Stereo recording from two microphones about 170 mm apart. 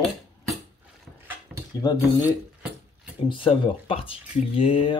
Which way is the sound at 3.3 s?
30° left (ahead or behind).